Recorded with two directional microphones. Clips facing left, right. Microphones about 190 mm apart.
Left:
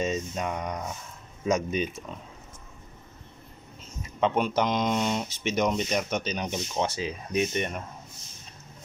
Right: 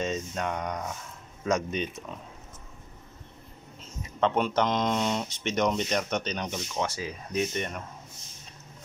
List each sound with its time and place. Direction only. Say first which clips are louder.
0.0 s a sound: left 1 dB; 10° left (ahead or behind)
1.4 s speech: left 2 dB; 5° left (ahead or behind)
4.2 s speech: even; 5° left (ahead or behind)
6.5 s speech: left 2 dB; 20° left (ahead or behind)